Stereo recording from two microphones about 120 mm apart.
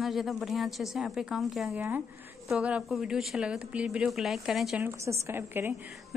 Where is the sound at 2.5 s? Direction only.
5° right (ahead or behind).